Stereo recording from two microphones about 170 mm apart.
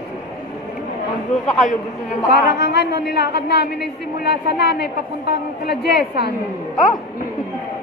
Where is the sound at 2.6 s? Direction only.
75° left (ahead or behind).